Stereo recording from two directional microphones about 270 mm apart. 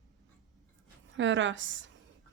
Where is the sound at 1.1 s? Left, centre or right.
Right.